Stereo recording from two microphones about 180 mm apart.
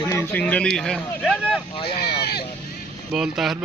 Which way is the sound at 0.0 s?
15° left (ahead or behind).